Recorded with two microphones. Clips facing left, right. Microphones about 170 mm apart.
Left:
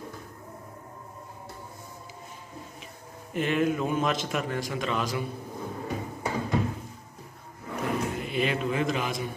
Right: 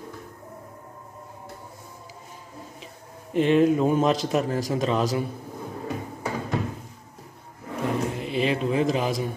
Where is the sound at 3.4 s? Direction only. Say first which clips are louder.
Right 7 dB; 30° right (ahead or behind).